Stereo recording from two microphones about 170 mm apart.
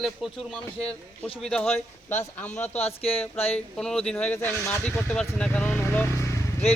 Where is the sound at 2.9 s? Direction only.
35° left (ahead or behind).